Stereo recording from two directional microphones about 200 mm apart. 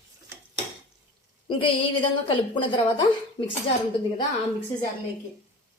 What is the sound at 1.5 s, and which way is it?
A woman's voice, 25° left (ahead or behind).